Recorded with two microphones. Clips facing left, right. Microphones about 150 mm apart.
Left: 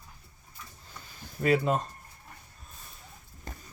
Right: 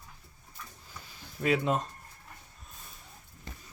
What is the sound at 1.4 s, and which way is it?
Speech, centre (ahead or behind).